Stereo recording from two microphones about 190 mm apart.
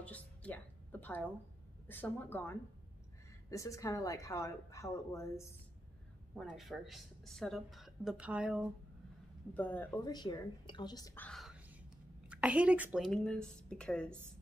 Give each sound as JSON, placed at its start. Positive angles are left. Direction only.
{"t": 0.0, "sound": "music", "side_deg": 10}
{"t": 1.9, "sound": "a woman's voice", "side_deg": 10}
{"t": 6.3, "sound": "speech", "side_deg": 0}
{"t": 9.5, "sound": "a woman's voice", "side_deg": 10}
{"t": 10.0, "sound": "a woman's voice", "side_deg": 25}
{"t": 11.1, "sound": "whispering", "side_deg": 5}
{"t": 12.3, "sound": "speech", "side_deg": -5}